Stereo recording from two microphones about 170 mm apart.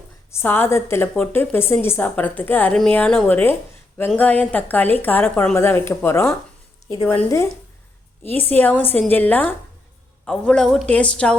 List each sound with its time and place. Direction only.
0.3 s a woman's voice: 15° left (ahead or behind)